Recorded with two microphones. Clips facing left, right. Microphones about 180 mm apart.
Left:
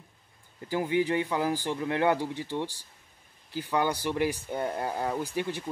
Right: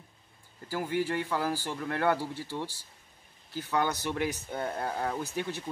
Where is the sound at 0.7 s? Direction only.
15° left (ahead or behind).